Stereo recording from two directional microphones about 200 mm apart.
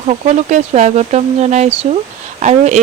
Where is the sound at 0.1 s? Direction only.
35° right (ahead or behind).